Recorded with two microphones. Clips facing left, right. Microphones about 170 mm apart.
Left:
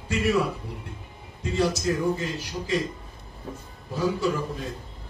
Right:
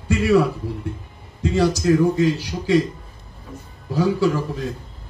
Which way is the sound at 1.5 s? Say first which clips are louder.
Right 7 dB; 80° right.